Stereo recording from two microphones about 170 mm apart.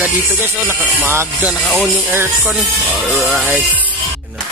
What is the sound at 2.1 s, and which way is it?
Speech, 10° right (ahead or behind).